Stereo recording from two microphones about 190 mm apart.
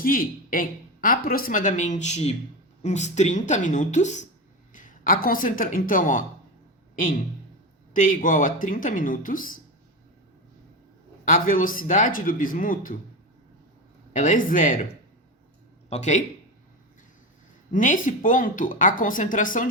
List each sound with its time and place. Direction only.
0.0 s a woman's voice: 50° left (ahead or behind)
7.9 s speech: 45° left (ahead or behind)
11.3 s speech: 45° left (ahead or behind)
14.1 s speech: 45° left (ahead or behind)
15.9 s a woman's voice: 40° left (ahead or behind)
17.7 s speech: 45° left (ahead or behind)